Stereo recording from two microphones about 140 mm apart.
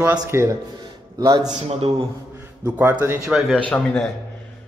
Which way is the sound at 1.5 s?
45° right (ahead or behind).